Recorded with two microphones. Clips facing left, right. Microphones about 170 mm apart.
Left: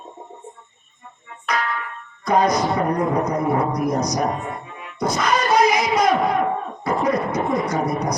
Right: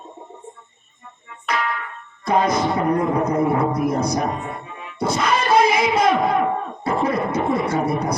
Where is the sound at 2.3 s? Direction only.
25° right (ahead or behind).